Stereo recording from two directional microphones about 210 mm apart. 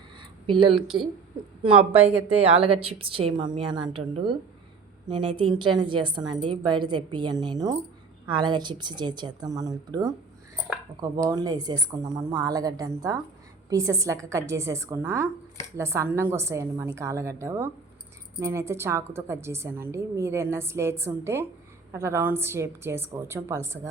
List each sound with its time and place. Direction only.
0.4 s a woman's voice: 25° right (ahead or behind)
0.8 s speech: centre (ahead or behind)
1.6 s a woman's voice: 25° right (ahead or behind)